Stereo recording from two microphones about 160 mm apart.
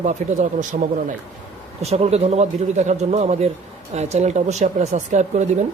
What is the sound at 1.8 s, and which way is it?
A man's voice, 40° right (ahead or behind).